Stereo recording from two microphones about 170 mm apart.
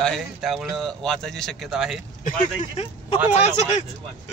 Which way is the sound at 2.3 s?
40° left (ahead or behind).